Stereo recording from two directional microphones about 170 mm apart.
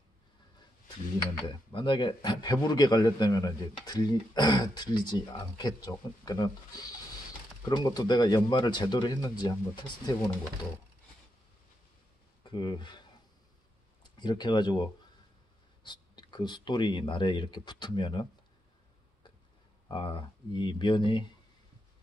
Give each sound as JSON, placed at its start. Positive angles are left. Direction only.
{"t": 1.5, "sound": "a man's voice", "side_deg": 30}
{"t": 12.4, "sound": "speech", "side_deg": 25}
{"t": 14.0, "sound": "a man's voice", "side_deg": 25}
{"t": 19.9, "sound": "a man's voice", "side_deg": 30}